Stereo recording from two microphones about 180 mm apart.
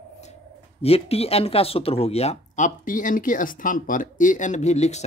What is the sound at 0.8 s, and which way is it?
Speech, 35° left (ahead or behind).